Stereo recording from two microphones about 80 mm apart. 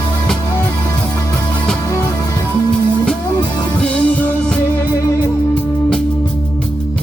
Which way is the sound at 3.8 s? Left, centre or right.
Centre.